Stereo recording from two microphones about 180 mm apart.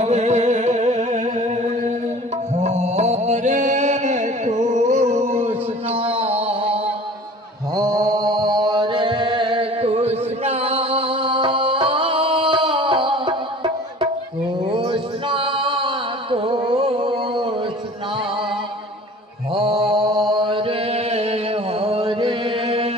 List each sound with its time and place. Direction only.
0.0 s music: 40° right (ahead or behind)
2.6 s a sound: 40° right (ahead or behind)
5.4 s music: 35° right (ahead or behind)
7.8 s mantra: 20° right (ahead or behind)
14.7 s male singing: 30° right (ahead or behind)
19.5 s mantra: 30° right (ahead or behind)
20.3 s chant: 25° right (ahead or behind)